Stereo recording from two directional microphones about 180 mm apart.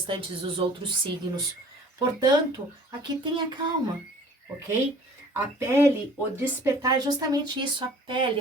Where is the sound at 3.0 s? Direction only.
25° right (ahead or behind).